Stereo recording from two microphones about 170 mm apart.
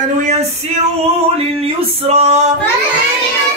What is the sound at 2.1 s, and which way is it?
Female singing, 40° right (ahead or behind).